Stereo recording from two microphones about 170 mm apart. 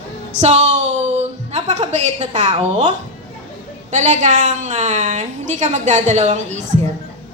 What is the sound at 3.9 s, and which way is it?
A woman's voice, 45° right (ahead or behind).